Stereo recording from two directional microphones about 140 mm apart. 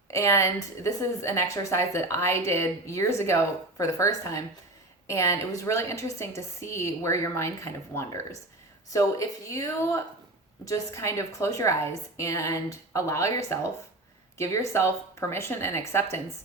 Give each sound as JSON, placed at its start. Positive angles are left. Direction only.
{"t": 0.1, "sound": "a woman's voice", "side_deg": 20}